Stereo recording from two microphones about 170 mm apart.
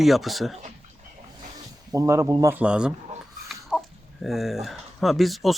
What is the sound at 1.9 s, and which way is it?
Speech, 20° right (ahead or behind).